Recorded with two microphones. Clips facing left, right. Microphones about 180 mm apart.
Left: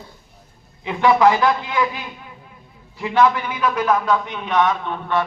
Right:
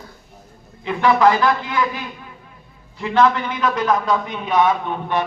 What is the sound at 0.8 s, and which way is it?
A man's voice, 15° left (ahead or behind).